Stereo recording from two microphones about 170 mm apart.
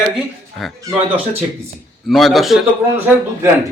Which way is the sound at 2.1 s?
Centre (ahead or behind).